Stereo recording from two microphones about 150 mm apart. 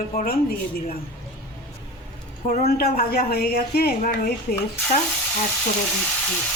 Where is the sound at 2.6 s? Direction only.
90° left; by 5.0 s 75° left (ahead or behind).